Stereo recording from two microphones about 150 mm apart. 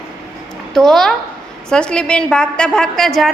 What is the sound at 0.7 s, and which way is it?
A woman's voice, centre (ahead or behind).